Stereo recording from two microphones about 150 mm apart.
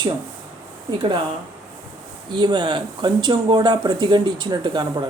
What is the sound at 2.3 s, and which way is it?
Speech, 30° right (ahead or behind).